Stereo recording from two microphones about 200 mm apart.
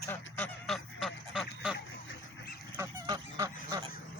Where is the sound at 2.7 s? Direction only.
20° right (ahead or behind).